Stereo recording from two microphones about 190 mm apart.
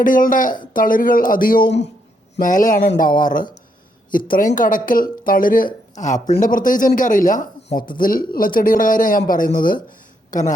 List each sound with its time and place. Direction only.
0.0 s a man's voice: 45° left (ahead or behind)